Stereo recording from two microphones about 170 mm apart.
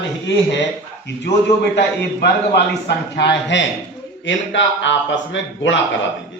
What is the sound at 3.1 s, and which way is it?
A man's voice, 90° left.